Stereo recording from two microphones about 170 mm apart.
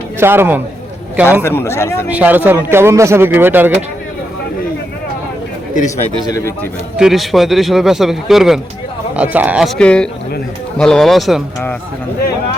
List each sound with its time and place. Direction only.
0.2 s a man's voice: 15° right (ahead or behind)
1.4 s speech: 15° left (ahead or behind)
2.1 s speech: 10° right (ahead or behind)
6.2 s speech: 20° left (ahead or behind)
6.9 s speech: centre (ahead or behind)